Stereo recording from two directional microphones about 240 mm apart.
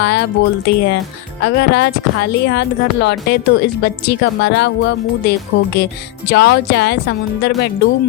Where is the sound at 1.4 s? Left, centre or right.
Left.